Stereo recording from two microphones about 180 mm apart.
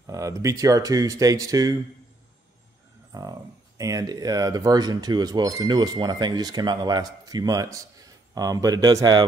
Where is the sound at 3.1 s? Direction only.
20° right (ahead or behind).